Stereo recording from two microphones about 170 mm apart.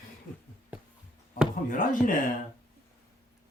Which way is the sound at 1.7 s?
55° left (ahead or behind).